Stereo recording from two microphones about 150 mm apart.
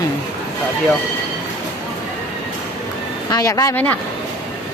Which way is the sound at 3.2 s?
25° left (ahead or behind).